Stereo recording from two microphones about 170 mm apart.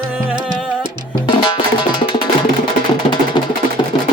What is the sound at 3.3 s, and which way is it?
Music, 30° left (ahead or behind).